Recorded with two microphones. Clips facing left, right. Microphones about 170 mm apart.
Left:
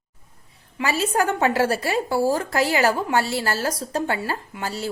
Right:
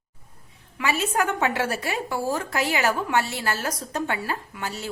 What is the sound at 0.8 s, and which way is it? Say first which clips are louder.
A woman's voice: left 2 dB; 35° left (ahead or behind).